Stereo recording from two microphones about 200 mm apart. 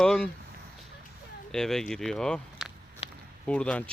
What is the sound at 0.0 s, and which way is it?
Speech, 5° left (ahead or behind).